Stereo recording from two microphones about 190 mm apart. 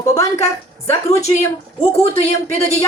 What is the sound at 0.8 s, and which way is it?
A woman's voice, 35° left (ahead or behind).